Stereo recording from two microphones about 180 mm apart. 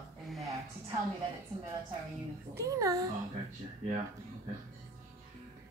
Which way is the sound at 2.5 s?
20° right (ahead or behind).